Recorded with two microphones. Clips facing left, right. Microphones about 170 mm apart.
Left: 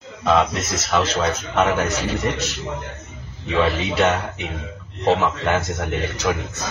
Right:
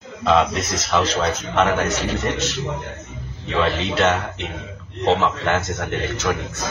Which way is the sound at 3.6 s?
5° left (ahead or behind).